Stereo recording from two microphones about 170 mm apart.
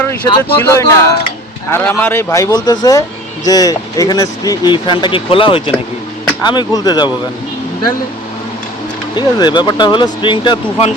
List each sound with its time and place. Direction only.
0.5 s speech: 15° left (ahead or behind)
9.1 s speech: 25° left (ahead or behind)